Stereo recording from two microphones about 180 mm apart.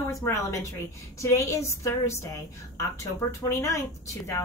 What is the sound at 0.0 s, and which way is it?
Speech, 15° left (ahead or behind).